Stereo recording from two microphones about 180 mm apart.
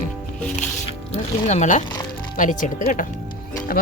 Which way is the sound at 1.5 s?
40° left (ahead or behind).